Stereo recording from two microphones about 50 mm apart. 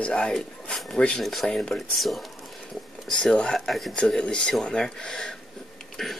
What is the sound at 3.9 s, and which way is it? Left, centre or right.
Speech, centre.